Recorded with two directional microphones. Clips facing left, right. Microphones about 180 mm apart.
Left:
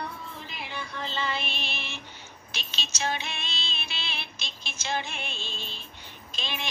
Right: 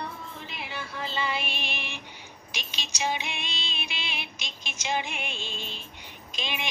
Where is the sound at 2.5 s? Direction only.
15° right (ahead or behind).